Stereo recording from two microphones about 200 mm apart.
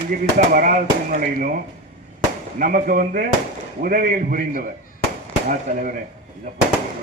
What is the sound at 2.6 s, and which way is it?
Speech, 45° right (ahead or behind).